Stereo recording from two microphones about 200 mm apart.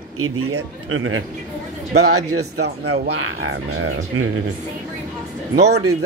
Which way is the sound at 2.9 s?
65° right (ahead or behind).